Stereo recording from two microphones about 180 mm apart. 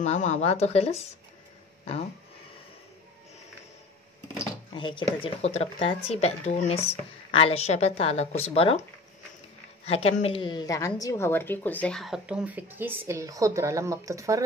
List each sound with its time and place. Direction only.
0.0 s speech: 40° left (ahead or behind)
4.7 s speech: 25° left (ahead or behind)
9.8 s a woman's voice: 35° left (ahead or behind); by 14.4 s 15° right (ahead or behind)